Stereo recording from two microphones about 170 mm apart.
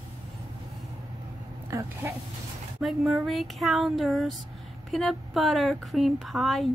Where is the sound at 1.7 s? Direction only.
15° right (ahead or behind).